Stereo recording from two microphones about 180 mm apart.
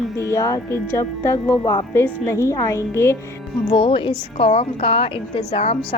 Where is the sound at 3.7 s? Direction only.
30° left (ahead or behind).